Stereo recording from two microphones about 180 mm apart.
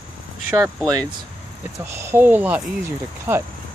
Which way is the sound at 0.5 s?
20° right (ahead or behind).